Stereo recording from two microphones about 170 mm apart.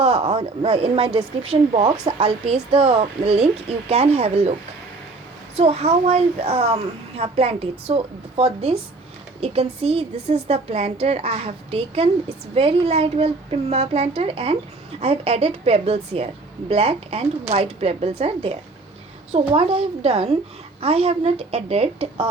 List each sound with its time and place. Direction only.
0.0 s a woman's voice: 35° right (ahead or behind)
5.5 s a woman's voice: 35° right (ahead or behind)